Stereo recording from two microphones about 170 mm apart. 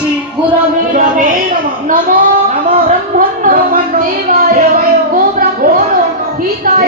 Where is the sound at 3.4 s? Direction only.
55° right (ahead or behind).